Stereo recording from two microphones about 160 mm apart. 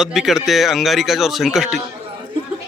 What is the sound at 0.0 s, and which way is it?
Speech, centre (ahead or behind).